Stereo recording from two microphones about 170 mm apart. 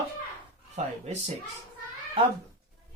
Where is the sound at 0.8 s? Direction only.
40° right (ahead or behind).